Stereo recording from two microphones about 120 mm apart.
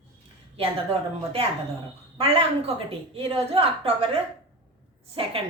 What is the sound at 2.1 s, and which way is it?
A woman's voice, 55° right (ahead or behind).